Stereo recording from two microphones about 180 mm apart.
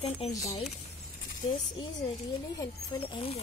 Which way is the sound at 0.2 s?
35° left (ahead or behind).